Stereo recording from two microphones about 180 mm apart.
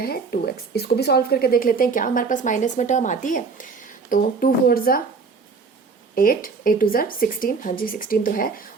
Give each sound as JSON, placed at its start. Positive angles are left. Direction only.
{"t": 0.0, "sound": "speech", "side_deg": 60}
{"t": 6.1, "sound": "speech", "side_deg": 50}